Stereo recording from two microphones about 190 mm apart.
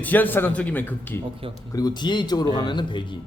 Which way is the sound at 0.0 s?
10° left (ahead or behind).